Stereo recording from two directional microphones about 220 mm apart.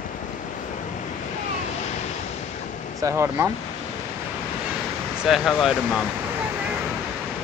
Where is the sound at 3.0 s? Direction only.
15° right (ahead or behind).